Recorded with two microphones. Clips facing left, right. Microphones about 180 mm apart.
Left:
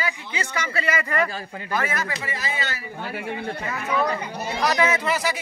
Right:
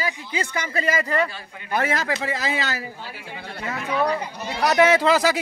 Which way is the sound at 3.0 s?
65° left (ahead or behind).